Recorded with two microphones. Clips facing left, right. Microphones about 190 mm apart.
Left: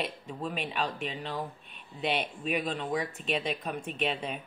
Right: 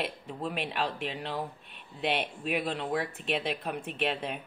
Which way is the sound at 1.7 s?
60° right (ahead or behind).